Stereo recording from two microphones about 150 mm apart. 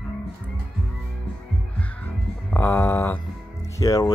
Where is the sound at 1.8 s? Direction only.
10° left (ahead or behind).